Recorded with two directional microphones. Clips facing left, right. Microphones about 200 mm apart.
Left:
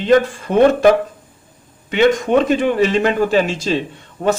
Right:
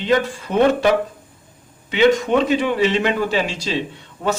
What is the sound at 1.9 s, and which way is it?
A man's voice, 50° left (ahead or behind).